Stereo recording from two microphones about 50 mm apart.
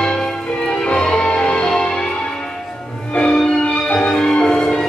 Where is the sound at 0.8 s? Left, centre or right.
Centre.